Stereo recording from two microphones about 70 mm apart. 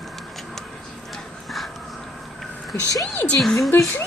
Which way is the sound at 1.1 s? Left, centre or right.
Centre.